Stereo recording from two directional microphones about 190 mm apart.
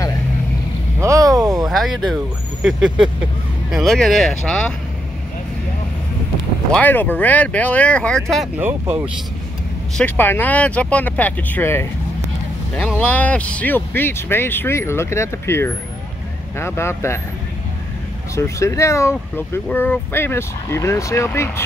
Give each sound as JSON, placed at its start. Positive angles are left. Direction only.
{"t": 0.9, "sound": "a sound", "side_deg": -15}
{"t": 1.7, "sound": "speech", "side_deg": 0}
{"t": 6.7, "sound": "speech", "side_deg": 10}
{"t": 8.3, "sound": "speech", "side_deg": -5}
{"t": 9.9, "sound": "speech", "side_deg": 10}
{"t": 18.3, "sound": "speech", "side_deg": 15}